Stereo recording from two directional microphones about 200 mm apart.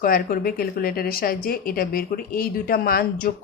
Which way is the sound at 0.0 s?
45° left (ahead or behind).